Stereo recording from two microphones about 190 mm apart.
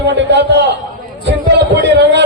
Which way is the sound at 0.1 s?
65° right (ahead or behind).